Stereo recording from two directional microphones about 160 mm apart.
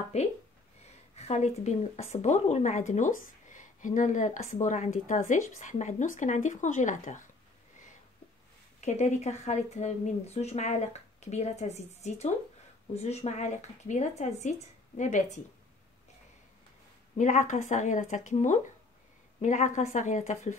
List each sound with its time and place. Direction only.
0.1 s speech: 45° left (ahead or behind)
8.8 s speech: 45° left (ahead or behind)
17.2 s speech: 50° left (ahead or behind)